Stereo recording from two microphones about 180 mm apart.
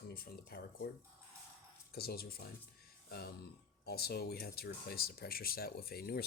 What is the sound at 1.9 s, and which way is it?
Speech, 55° left (ahead or behind).